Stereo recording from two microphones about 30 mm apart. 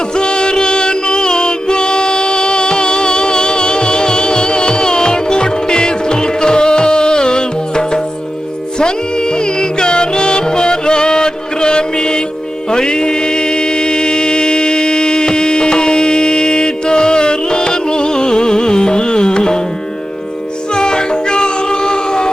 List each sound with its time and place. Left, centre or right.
0.2 s music: left
9.6 s music: left
12.7 s mantra: left
20.7 s music: left